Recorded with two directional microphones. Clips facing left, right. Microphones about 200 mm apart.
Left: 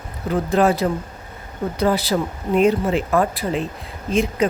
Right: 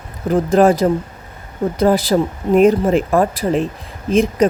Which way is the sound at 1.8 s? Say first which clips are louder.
Right 5 dB; 45° right (ahead or behind).